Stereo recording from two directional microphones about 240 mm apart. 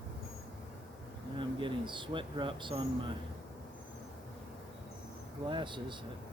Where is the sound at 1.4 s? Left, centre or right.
Centre.